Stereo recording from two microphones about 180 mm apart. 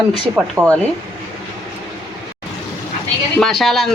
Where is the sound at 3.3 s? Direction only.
Centre (ahead or behind).